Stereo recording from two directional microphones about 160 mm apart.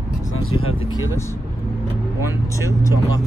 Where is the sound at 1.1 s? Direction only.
15° left (ahead or behind).